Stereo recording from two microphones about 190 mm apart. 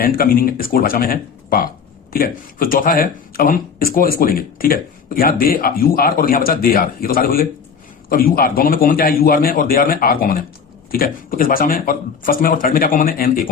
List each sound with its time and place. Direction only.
0.0 s speech: 50° left (ahead or behind)